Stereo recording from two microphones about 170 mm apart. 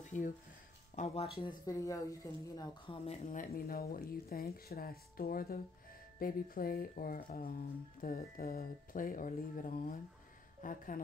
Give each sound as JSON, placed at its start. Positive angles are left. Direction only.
{"t": 0.1, "sound": "a woman's voice", "side_deg": 45}
{"t": 1.7, "sound": "a woman's voice", "side_deg": 20}
{"t": 3.3, "sound": "a woman's voice", "side_deg": 55}